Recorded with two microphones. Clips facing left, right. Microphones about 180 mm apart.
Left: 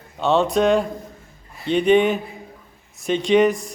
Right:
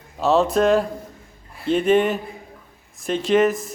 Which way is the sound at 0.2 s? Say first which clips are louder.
Even; centre (ahead or behind).